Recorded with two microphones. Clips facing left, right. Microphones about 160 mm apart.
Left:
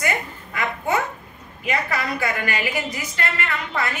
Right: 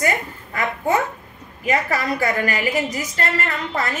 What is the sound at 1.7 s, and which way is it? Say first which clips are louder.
A woman's voice: right 4 dB; 40° right (ahead or behind).